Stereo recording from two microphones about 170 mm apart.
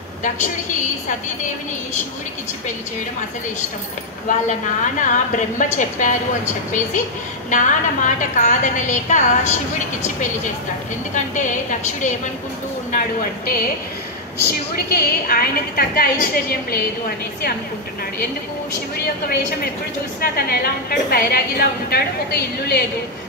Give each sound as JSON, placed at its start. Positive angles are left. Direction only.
{"t": 4.3, "sound": "a woman's voice", "side_deg": 50}
{"t": 12.9, "sound": "a woman's voice", "side_deg": 55}
{"t": 14.9, "sound": "a woman's voice", "side_deg": 60}
{"t": 20.2, "sound": "a woman's voice", "side_deg": 65}